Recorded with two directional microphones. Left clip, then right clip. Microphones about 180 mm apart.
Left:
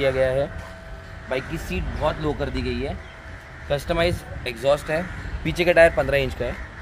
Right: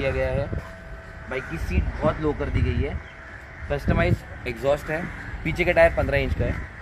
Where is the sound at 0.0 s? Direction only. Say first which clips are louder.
Left 5 dB; 45° left (ahead or behind).